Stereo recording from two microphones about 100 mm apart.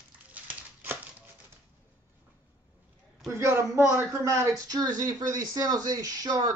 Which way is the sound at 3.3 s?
25° right (ahead or behind).